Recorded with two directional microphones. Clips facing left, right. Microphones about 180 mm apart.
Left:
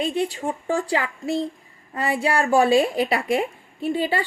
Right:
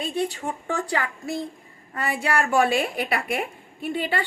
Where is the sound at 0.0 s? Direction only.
30° left (ahead or behind).